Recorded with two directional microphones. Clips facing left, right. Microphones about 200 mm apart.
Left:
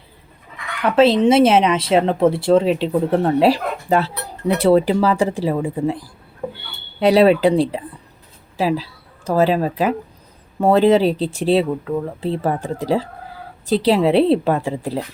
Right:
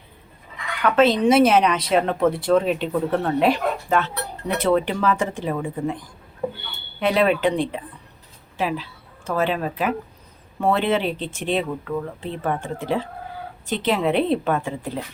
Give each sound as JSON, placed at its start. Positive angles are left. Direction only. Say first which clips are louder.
{"t": 0.9, "sound": "a woman's voice", "louder": "left 3 dB", "side_deg": 30}